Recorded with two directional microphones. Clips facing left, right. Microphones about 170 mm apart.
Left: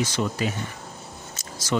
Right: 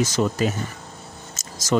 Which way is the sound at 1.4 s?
45° right (ahead or behind).